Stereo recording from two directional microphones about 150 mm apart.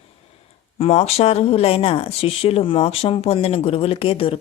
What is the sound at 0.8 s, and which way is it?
Speech, 45° left (ahead or behind).